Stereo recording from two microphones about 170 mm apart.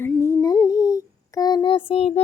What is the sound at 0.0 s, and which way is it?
Humming, 15° left (ahead or behind).